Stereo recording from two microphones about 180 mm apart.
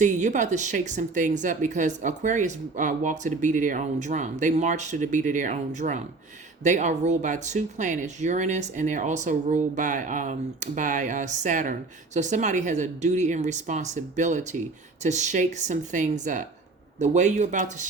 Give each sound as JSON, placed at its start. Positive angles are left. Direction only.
{"t": 0.0, "sound": "a woman's voice", "side_deg": -45}